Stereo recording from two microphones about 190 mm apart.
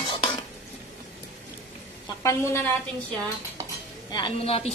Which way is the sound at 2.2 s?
15° left (ahead or behind).